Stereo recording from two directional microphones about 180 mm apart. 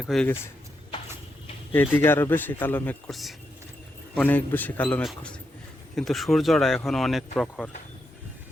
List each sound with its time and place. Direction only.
0.0 s speech: 5° left (ahead or behind)
1.7 s speech: 10° left (ahead or behind)